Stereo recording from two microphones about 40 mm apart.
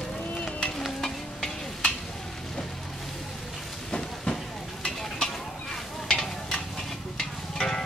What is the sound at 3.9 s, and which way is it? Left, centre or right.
Train, centre.